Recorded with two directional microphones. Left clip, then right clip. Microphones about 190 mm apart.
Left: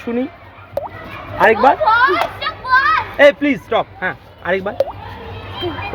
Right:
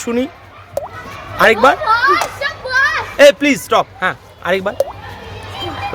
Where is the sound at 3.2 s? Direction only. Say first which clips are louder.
Right 4 dB; 35° right (ahead or behind).